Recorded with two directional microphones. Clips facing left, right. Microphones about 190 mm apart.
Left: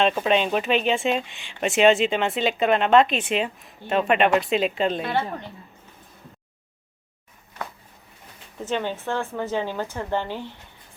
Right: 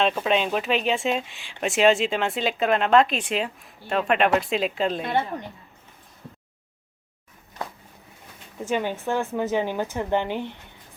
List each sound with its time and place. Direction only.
0.0 s speech: centre (ahead or behind)
8.6 s speech: 10° right (ahead or behind)